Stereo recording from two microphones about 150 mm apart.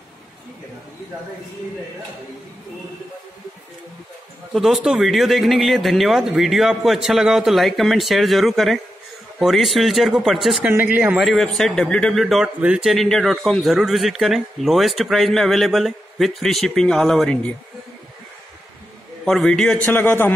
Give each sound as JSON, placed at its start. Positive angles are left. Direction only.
{"t": 4.6, "sound": "a man's voice", "side_deg": 0}
{"t": 10.7, "sound": "a man's voice", "side_deg": -15}
{"t": 19.2, "sound": "a man's voice", "side_deg": 5}